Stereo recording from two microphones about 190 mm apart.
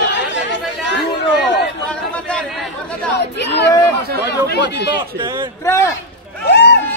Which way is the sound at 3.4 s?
65° left (ahead or behind).